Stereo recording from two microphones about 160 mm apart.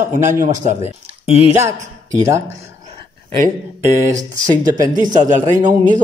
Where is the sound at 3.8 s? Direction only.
15° right (ahead or behind).